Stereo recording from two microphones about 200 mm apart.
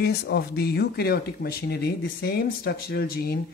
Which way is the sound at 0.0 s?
55° left (ahead or behind).